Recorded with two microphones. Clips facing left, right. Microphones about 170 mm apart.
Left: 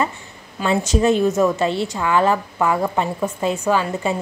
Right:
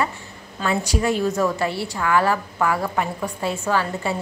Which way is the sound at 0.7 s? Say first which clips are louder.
Left 5 dB; 25° left (ahead or behind).